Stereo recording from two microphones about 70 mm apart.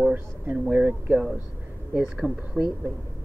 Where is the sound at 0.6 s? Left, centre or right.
Right.